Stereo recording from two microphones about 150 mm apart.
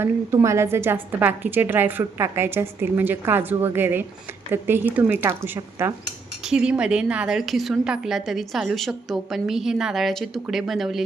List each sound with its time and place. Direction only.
0.0 s a woman's voice: 20° right (ahead or behind)
6.4 s a woman's voice: 5° right (ahead or behind)